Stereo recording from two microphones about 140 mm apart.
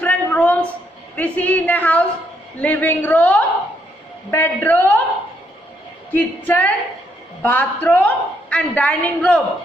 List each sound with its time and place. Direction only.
0.0 s a sound: 10° left (ahead or behind)
1.1 s a woman's voice: 10° left (ahead or behind)
6.1 s a woman's voice: 10° left (ahead or behind)